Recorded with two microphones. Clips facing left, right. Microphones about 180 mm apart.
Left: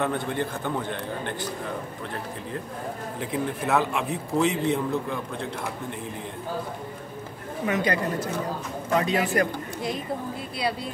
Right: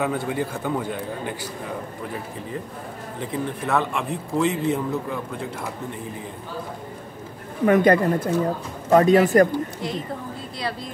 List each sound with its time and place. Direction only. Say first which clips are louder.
0.0 s a man's voice: right 2 dB; 5° right (ahead or behind)
3.2 s a man's voice: right 2 dB; 5° left (ahead or behind)
7.6 s speech: right 9 dB; 50° right (ahead or behind)